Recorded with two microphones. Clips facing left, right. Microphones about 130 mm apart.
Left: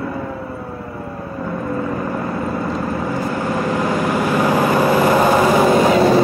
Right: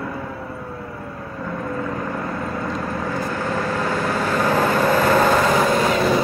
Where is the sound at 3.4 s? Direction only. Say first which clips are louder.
Left 4 dB; 15° left (ahead or behind).